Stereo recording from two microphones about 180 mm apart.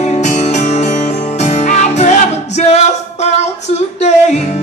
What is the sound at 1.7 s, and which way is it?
Music, 40° left (ahead or behind).